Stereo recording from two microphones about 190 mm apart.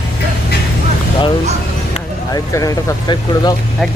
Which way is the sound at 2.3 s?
20° left (ahead or behind).